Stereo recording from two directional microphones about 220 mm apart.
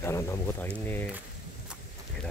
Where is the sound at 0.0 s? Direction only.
10° left (ahead or behind).